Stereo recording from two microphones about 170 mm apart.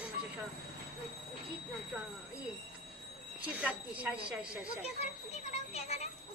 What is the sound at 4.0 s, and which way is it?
Speech, 5° right (ahead or behind).